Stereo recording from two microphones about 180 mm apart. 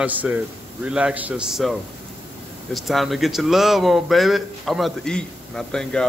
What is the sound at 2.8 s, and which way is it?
Speech, centre (ahead or behind).